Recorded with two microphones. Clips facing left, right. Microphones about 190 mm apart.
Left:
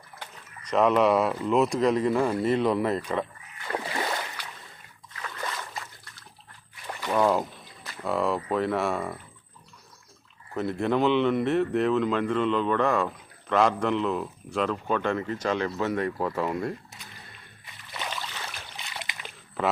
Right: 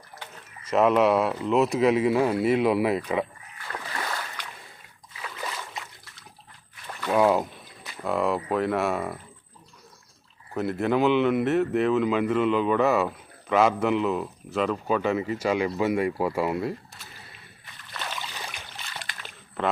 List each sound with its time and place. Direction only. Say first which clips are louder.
0.7 s speech: right 1 dB; 5° right (ahead or behind)
3.9 s boat: left 1 dB; 25° left (ahead or behind)
5.1 s a sound: even; 10° right (ahead or behind)
7.1 s speech: right 2 dB; 10° right (ahead or behind)
10.5 s speech: right 1 dB; centre (ahead or behind)
18.1 s boat: even; 10° right (ahead or behind)
18.8 s a sound: left 2 dB; 15° left (ahead or behind)